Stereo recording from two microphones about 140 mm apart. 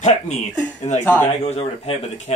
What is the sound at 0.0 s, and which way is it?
Speech, 55° left (ahead or behind).